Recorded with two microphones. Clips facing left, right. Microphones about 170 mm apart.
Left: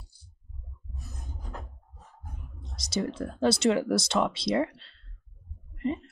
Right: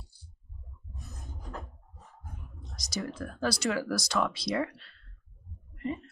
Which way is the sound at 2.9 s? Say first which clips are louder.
Left 5 dB; 25° left (ahead or behind).